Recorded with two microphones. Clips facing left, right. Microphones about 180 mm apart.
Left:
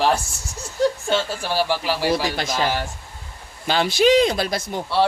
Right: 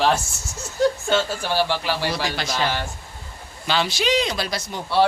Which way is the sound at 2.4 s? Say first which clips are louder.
Left 2 dB; 45° left (ahead or behind).